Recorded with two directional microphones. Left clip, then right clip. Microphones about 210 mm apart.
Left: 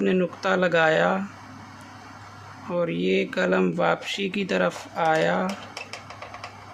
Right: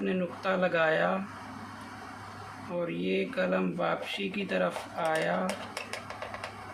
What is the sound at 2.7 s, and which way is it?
Speech, 45° left (ahead or behind).